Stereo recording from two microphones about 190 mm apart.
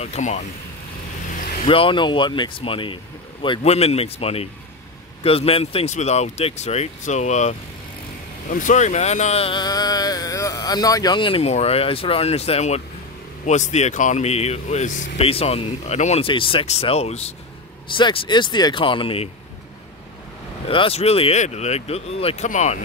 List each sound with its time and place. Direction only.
0.0 s speech: 35° left (ahead or behind)
1.3 s vehicle: 45° left (ahead or behind)
1.7 s speech: 30° left (ahead or behind)
20.6 s speech: 30° left (ahead or behind)